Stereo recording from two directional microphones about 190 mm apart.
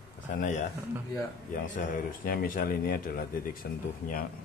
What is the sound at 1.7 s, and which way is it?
Speech, 50° left (ahead or behind).